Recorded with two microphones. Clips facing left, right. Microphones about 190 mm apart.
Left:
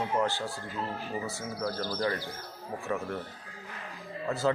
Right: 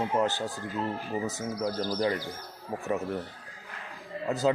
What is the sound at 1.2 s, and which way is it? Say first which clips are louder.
A man's voice: right 3 dB; 15° right (ahead or behind).